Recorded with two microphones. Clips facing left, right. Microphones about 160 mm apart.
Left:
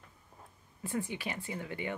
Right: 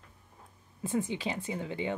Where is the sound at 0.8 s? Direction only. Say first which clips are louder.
Right 5 dB; 20° right (ahead or behind).